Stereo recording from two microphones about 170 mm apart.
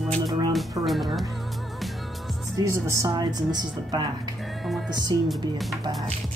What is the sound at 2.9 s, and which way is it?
A woman's voice, 20° right (ahead or behind).